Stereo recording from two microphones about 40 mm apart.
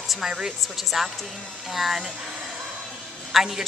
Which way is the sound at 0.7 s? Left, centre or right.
Centre.